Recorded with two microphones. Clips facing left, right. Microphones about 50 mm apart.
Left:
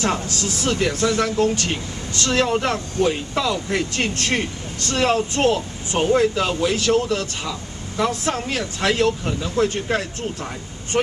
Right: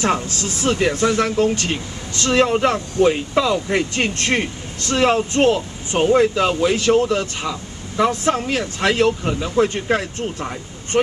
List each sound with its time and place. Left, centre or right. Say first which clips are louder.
0.0 s speech: right 2 dB; right
3.0 s speech: right 5 dB; right
9.8 s speech: right 3 dB; centre